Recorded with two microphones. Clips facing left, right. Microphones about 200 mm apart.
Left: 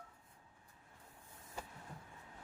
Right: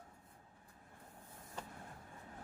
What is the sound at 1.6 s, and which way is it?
Vehicle, 10° left (ahead or behind).